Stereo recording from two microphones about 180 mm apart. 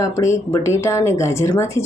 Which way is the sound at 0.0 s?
15° left (ahead or behind).